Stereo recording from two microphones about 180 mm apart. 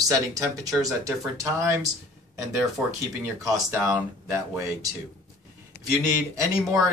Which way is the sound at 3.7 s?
15° right (ahead or behind).